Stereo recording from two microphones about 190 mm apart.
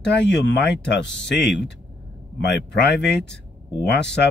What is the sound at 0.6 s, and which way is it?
Speech, 65° left (ahead or behind).